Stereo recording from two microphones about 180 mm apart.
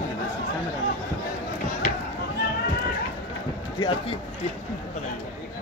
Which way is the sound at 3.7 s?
25° left (ahead or behind).